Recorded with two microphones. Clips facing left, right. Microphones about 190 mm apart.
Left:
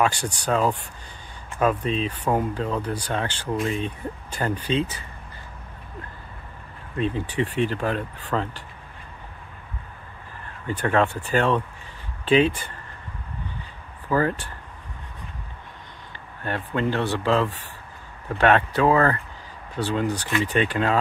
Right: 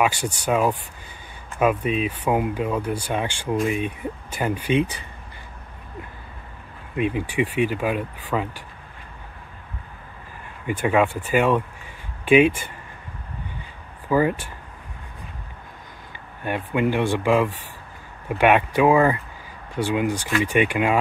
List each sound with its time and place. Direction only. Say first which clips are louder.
0.0 s speech: right 1 dB; 10° right (ahead or behind)
7.0 s speech: right 2 dB; 10° right (ahead or behind)
10.8 s speech: right 2 dB; 10° right (ahead or behind)
14.0 s speech: right 3 dB; 15° right (ahead or behind)
16.4 s speech: right 3 dB; 15° right (ahead or behind)